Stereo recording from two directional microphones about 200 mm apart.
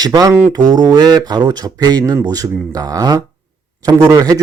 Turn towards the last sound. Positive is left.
turn(degrees=-20)  # may be behind; listen again after turning